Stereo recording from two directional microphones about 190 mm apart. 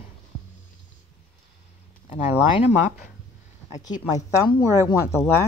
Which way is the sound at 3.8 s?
20° left (ahead or behind).